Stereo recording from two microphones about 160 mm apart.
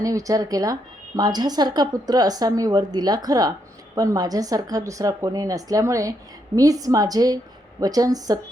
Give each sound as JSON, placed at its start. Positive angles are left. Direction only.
{"t": 0.0, "sound": "a woman's voice", "side_deg": -20}